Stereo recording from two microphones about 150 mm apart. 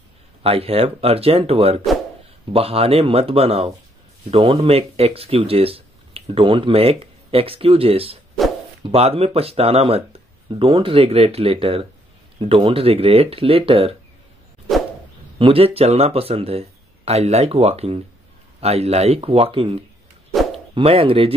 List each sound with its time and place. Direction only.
0.4 s speech: 40° right (ahead or behind)
15.3 s speech: 40° right (ahead or behind)